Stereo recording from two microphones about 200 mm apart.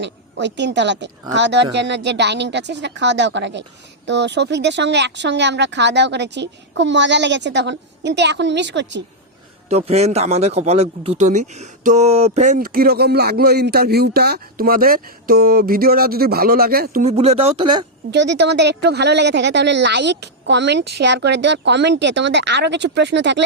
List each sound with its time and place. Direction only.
0.0 s a woman's voice: 60° right (ahead or behind)
9.6 s a man's voice: 30° right (ahead or behind); by 17.0 s 50° right (ahead or behind)
17.0 s speech: 30° right (ahead or behind)
18.1 s speech: 60° right (ahead or behind)